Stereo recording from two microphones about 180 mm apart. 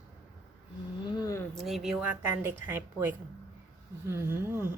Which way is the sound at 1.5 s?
Centre (ahead or behind).